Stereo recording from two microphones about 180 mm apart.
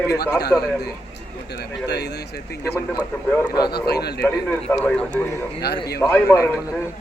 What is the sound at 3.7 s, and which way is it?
Speech, 60° left (ahead or behind).